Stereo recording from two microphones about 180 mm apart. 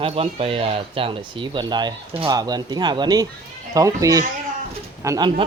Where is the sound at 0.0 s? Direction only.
30° right (ahead or behind).